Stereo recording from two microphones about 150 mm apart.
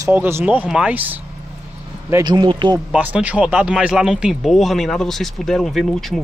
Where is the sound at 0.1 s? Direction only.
15° right (ahead or behind).